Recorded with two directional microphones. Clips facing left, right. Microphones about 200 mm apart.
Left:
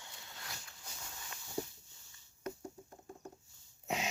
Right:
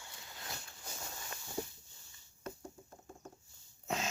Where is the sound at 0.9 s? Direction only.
45° right (ahead or behind).